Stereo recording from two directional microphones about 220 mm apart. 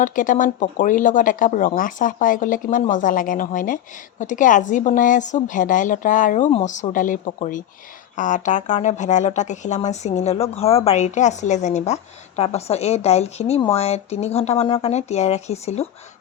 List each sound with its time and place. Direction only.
0.0 s speech: 35° left (ahead or behind)